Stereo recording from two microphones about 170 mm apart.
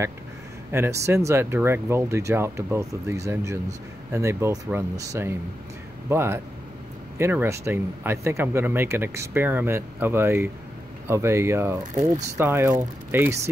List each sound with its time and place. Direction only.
0.7 s speech: 15° right (ahead or behind)
11.9 s speech: 45° right (ahead or behind)
12.4 s speech: 15° right (ahead or behind)